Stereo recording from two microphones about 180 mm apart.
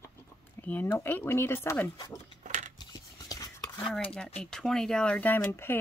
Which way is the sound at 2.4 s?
40° right (ahead or behind).